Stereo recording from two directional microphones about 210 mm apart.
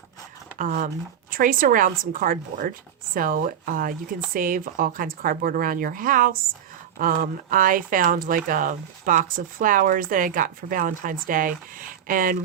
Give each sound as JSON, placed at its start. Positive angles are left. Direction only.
{"t": 0.6, "sound": "speech", "side_deg": -40}